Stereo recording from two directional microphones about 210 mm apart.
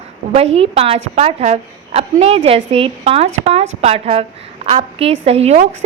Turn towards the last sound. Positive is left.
turn(degrees=-30)  # may be behind; listen again after turning